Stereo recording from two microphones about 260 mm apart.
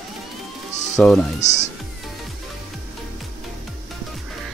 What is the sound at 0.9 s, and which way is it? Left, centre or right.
Speech, centre.